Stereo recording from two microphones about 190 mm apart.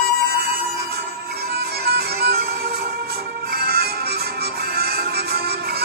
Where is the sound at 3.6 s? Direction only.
55° right (ahead or behind).